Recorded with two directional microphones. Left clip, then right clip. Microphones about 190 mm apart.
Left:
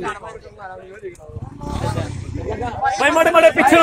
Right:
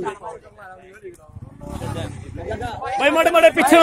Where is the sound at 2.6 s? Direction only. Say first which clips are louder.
Left 2 dB; 50° right (ahead or behind).